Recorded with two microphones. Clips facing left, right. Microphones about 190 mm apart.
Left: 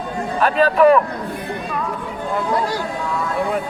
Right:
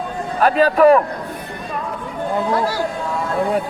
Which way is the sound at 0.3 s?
40° right (ahead or behind).